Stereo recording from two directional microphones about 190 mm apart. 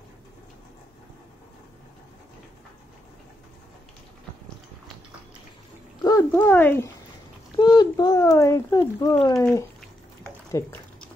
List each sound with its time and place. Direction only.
6.0 s speech: 15° left (ahead or behind)
7.5 s speech: 20° left (ahead or behind)
10.5 s a sound: 10° left (ahead or behind)